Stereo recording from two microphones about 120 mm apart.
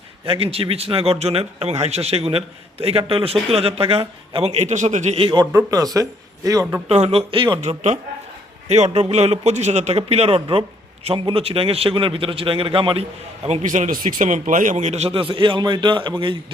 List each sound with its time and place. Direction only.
0.3 s a man's voice: 55° right (ahead or behind); by 5.1 s 85° right
5.1 s a man's voice: 45° right (ahead or behind)
5.7 s speech: 30° right (ahead or behind)
6.8 s a man's voice: 60° right (ahead or behind); by 7.6 s 45° right (ahead or behind)
7.6 s a man's voice: 70° right (ahead or behind)
8.9 s a man's voice: 55° right (ahead or behind)